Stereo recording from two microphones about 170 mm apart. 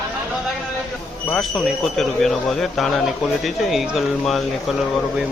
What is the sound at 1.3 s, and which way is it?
Speech, centre (ahead or behind).